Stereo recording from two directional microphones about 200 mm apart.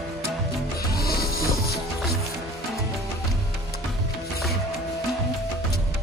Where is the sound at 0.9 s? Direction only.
50° left (ahead or behind).